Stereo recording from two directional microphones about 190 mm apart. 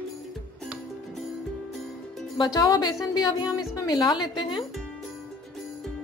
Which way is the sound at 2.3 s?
20° left (ahead or behind).